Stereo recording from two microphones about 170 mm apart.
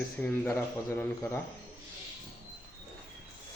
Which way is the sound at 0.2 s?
10° left (ahead or behind).